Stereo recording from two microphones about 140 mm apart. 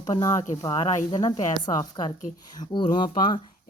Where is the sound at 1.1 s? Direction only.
30° left (ahead or behind).